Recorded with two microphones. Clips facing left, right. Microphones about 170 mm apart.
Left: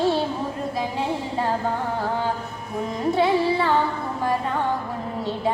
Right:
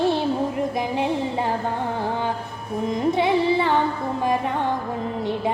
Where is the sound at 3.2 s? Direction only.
20° right (ahead or behind).